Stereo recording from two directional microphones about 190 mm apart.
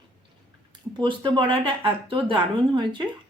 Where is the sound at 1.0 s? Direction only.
25° right (ahead or behind).